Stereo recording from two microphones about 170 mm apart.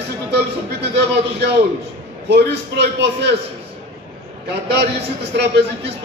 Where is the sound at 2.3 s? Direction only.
75° right (ahead or behind).